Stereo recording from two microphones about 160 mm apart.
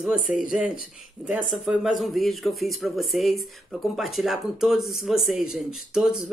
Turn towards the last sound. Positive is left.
turn(degrees=-5)  # may be behind; listen again after turning